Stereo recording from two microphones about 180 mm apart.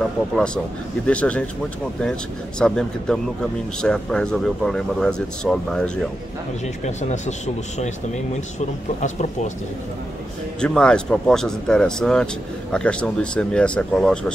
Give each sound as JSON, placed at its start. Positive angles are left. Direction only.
{"t": 1.0, "sound": "speech", "side_deg": 5}
{"t": 2.6, "sound": "speech", "side_deg": 5}
{"t": 6.8, "sound": "speech", "side_deg": 40}
{"t": 10.6, "sound": "speech", "side_deg": 5}